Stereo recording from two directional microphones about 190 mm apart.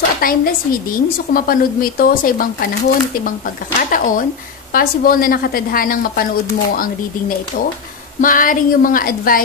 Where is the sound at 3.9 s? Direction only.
45° left (ahead or behind).